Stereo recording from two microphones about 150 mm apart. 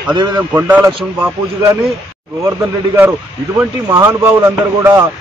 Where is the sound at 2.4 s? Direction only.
15° right (ahead or behind).